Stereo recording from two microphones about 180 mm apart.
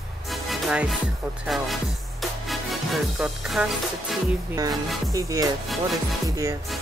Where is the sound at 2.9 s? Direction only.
Centre (ahead or behind).